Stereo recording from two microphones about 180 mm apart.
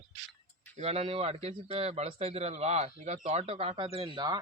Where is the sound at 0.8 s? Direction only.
35° right (ahead or behind).